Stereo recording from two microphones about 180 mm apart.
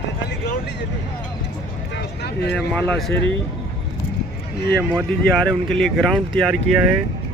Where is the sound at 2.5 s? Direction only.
5° left (ahead or behind).